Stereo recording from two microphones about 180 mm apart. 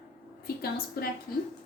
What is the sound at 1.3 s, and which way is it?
Speech, 55° left (ahead or behind).